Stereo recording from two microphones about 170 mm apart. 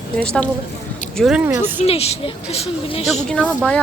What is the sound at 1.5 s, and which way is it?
Speech, 10° right (ahead or behind).